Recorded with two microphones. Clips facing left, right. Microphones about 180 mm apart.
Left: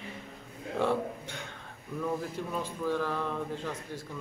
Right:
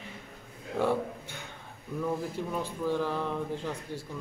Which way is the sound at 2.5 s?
15° right (ahead or behind).